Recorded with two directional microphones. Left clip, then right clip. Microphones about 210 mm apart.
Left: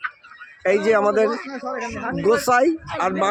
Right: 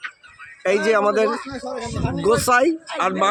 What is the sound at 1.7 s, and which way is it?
Speech, 25° left (ahead or behind).